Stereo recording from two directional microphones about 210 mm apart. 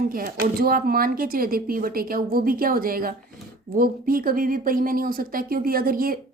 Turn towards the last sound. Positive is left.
turn(degrees=-45)  # may be behind; listen again after turning